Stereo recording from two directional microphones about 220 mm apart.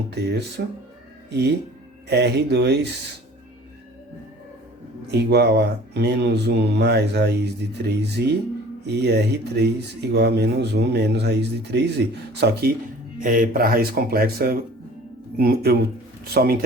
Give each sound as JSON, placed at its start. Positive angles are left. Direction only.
{"t": 0.1, "sound": "speech", "side_deg": -50}
{"t": 5.1, "sound": "speech", "side_deg": -50}